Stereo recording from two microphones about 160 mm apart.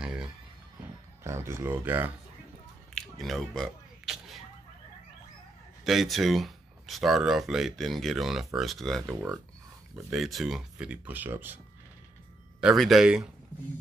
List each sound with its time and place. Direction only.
1.2 s speech: 15° right (ahead or behind)
2.9 s a sound: centre (ahead or behind)
5.9 s speech: centre (ahead or behind)
12.5 s speech: centre (ahead or behind)